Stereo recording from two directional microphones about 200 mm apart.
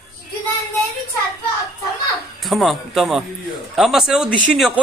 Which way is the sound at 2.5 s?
Centre (ahead or behind).